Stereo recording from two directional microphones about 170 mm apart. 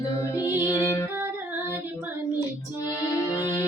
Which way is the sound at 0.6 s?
20° left (ahead or behind).